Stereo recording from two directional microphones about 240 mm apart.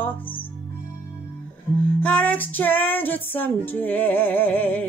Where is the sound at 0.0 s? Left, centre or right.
Centre.